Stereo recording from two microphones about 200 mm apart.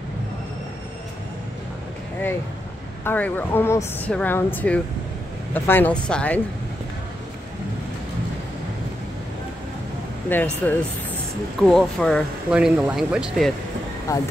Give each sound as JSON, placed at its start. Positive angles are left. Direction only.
{"t": 3.0, "sound": "a woman's voice", "side_deg": 10}
{"t": 10.3, "sound": "a woman's voice", "side_deg": 10}
{"t": 14.1, "sound": "a woman's voice", "side_deg": 15}